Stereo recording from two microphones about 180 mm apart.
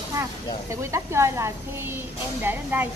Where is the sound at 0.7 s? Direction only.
15° right (ahead or behind).